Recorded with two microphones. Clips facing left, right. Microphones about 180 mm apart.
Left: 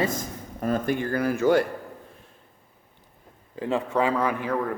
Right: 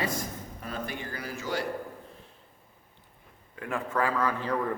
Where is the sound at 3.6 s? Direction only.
20° left (ahead or behind).